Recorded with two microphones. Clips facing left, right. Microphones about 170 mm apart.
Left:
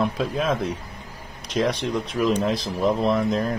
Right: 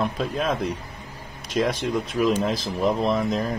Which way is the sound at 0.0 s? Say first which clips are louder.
Left 1 dB; centre (ahead or behind).